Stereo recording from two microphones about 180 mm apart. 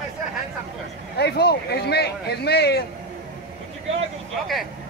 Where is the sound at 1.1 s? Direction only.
65° left (ahead or behind).